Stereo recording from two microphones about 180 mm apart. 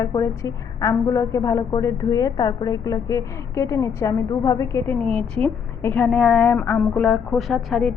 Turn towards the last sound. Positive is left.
turn(degrees=0)  # may be behind; listen again after turning